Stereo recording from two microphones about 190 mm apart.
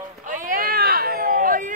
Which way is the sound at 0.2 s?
45° right (ahead or behind).